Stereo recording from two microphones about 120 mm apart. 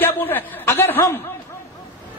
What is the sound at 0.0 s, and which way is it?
Chuckle, 15° left (ahead or behind).